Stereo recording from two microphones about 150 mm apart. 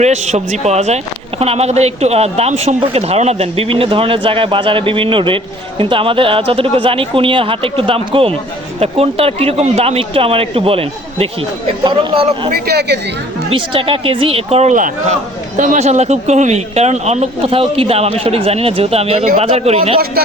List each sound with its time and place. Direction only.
0.0 s speech: 50° right (ahead or behind)
12.5 s speech: 90° right
13.5 s speech: 35° right (ahead or behind)